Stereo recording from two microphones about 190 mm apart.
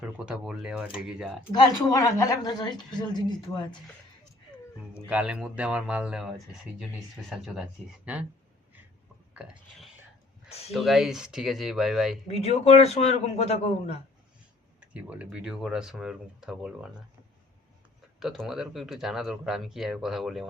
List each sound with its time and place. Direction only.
0.3 s speech: centre (ahead or behind)
1.5 s a woman's voice: 20° left (ahead or behind)
5.0 s speech: 5° right (ahead or behind)
9.3 s speech: 5° right (ahead or behind)
12.3 s a man's voice: 35° left (ahead or behind)
14.8 s speech: 5° right (ahead or behind)
18.2 s speech: centre (ahead or behind)